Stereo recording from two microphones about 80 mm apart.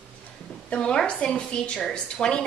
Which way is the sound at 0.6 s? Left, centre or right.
Centre.